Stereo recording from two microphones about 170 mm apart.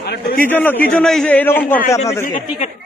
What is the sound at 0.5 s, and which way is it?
A man's voice, 10° left (ahead or behind).